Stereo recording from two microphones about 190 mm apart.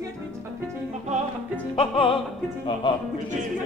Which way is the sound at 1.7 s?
30° left (ahead or behind).